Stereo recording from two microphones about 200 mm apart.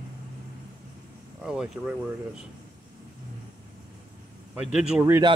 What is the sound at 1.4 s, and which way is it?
Speech, 5° right (ahead or behind).